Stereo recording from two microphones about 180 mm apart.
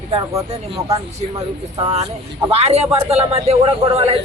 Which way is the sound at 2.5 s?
35° right (ahead or behind).